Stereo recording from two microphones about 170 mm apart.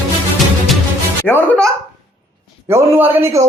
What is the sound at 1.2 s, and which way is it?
Speech, 15° left (ahead or behind).